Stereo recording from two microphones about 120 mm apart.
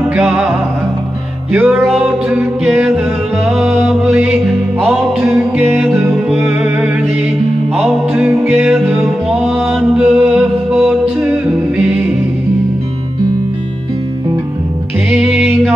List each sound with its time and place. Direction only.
1.5 s music: 15° right (ahead or behind)
5.6 s music: 15° right (ahead or behind)
6.6 s music: 5° right (ahead or behind)
8.3 s music: 20° right (ahead or behind)
8.8 s music: 10° right (ahead or behind)